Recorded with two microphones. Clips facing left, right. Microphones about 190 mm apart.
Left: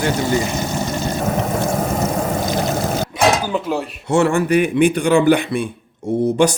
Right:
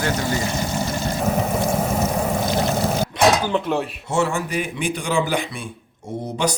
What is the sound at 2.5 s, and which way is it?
Pour, 15° left (ahead or behind).